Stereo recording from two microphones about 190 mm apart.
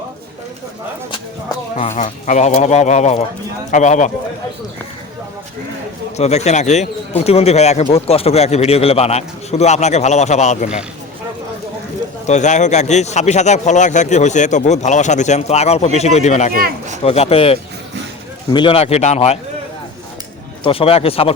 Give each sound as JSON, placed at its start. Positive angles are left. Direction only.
{"t": 1.7, "sound": "speech", "side_deg": 35}
{"t": 6.1, "sound": "speech", "side_deg": 35}
{"t": 12.3, "sound": "speech", "side_deg": 40}
{"t": 20.7, "sound": "speech", "side_deg": 30}